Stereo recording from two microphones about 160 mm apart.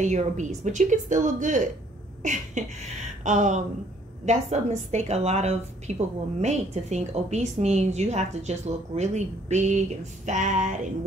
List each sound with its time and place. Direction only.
0.0 s a woman's voice: 45° right (ahead or behind)